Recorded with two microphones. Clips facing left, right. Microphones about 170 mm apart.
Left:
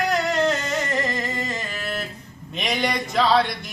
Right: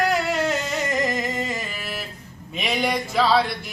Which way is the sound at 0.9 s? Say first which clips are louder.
Right 2 dB; 15° right (ahead or behind).